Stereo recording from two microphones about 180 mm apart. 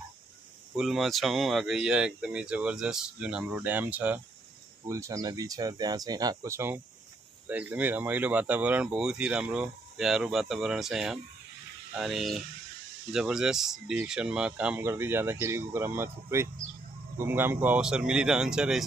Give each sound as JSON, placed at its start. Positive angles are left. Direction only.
{"t": 0.7, "sound": "speech", "side_deg": 0}